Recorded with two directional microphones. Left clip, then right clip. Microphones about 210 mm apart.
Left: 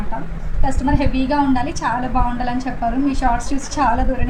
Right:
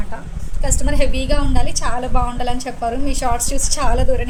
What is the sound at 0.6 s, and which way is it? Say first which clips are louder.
A woman's voice: left 1 dB; 60° right (ahead or behind).